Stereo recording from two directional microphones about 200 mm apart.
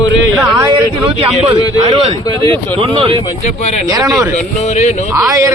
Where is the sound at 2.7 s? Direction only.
30° right (ahead or behind).